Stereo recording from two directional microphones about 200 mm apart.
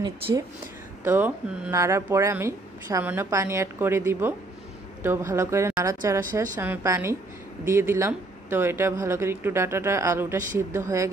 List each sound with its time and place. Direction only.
0.0 s speech: 15° right (ahead or behind)